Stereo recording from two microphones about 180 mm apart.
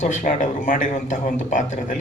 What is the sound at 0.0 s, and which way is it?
A woman's voice, 45° left (ahead or behind).